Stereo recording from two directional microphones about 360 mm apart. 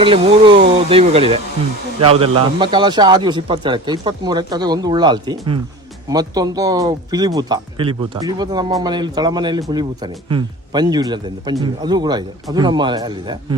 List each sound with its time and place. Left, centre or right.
0.0 s speech: centre